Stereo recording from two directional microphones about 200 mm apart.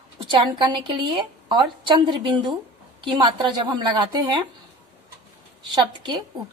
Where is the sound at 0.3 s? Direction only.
25° right (ahead or behind).